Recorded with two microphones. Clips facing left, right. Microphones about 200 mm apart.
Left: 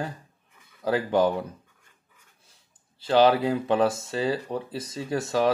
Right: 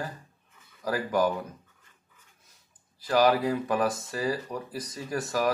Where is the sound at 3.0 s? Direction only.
25° left (ahead or behind).